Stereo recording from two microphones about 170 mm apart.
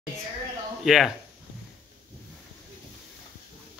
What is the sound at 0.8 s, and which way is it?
Speech, centre (ahead or behind).